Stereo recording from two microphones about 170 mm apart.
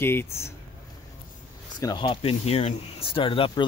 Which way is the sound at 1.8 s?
25° left (ahead or behind).